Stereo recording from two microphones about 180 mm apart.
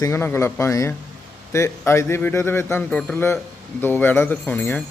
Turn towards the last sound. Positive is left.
turn(degrees=10)  # may be behind; listen again after turning